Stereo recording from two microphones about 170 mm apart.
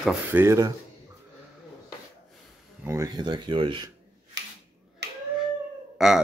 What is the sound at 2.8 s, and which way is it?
Speech, 20° right (ahead or behind).